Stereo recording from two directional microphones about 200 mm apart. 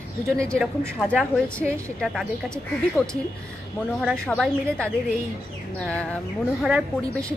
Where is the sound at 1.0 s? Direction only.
5° left (ahead or behind).